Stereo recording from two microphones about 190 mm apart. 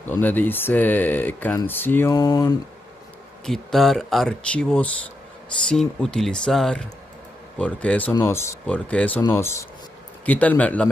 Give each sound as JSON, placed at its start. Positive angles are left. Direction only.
{"t": 0.0, "sound": "speech", "side_deg": 10}
{"t": 3.4, "sound": "speech", "side_deg": 0}